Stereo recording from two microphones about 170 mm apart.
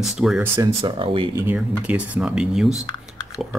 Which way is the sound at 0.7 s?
30° right (ahead or behind).